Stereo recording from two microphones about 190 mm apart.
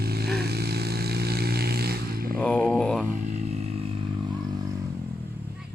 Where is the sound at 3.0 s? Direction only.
40° right (ahead or behind).